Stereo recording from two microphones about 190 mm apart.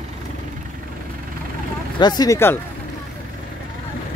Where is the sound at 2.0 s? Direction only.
20° left (ahead or behind).